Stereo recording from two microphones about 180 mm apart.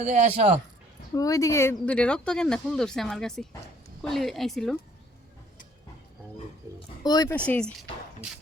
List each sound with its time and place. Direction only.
0.0 s a man's voice: 40° right (ahead or behind)
1.1 s speech: 20° left (ahead or behind); by 4.8 s centre (ahead or behind)
6.7 s speech: 20° left (ahead or behind)
7.3 s speech: 5° left (ahead or behind)